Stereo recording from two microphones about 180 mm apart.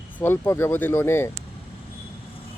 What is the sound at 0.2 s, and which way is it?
Speech, 15° left (ahead or behind).